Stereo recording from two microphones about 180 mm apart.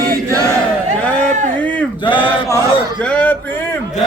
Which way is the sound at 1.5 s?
10° left (ahead or behind).